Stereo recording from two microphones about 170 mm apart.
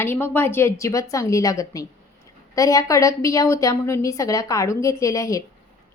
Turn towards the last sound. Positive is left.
turn(degrees=20)  # may be behind; listen again after turning